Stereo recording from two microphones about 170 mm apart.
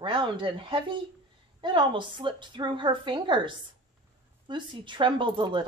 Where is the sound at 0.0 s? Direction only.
30° right (ahead or behind).